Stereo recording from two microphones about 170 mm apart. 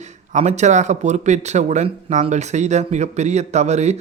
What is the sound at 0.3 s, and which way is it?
Speech, 45° right (ahead or behind).